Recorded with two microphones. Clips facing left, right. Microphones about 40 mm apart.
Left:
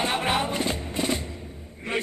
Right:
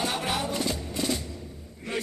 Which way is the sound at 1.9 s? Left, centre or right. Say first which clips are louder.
Left 3 dB; left.